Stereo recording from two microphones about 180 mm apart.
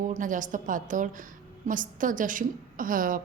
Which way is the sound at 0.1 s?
45° right (ahead or behind).